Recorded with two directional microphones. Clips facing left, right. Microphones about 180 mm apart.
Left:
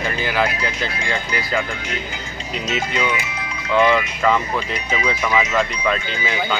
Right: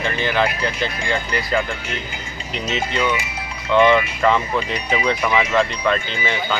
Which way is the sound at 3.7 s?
5° left (ahead or behind).